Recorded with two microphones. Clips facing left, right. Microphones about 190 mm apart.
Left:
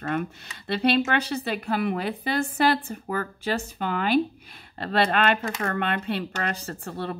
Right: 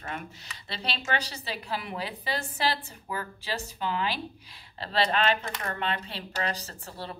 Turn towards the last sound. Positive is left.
turn(degrees=55)  # may be behind; listen again after turning